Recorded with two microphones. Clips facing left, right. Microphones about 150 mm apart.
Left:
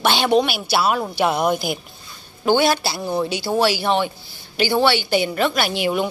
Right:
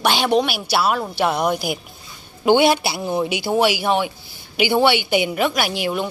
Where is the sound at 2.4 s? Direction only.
20° right (ahead or behind).